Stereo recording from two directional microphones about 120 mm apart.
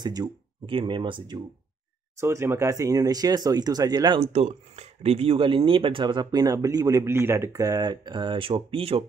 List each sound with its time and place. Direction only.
0.0 s speech: 35° right (ahead or behind)
2.1 s speech: 20° right (ahead or behind)
4.2 s speech: 60° right (ahead or behind)